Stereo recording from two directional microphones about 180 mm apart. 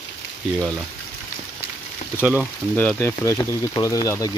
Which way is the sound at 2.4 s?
5° left (ahead or behind).